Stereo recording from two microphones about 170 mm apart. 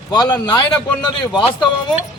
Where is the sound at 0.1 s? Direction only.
25° left (ahead or behind).